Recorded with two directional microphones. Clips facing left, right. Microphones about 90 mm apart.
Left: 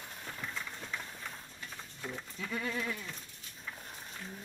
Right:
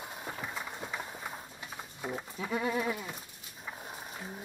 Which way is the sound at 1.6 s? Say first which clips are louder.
Right 3 dB; 20° right (ahead or behind).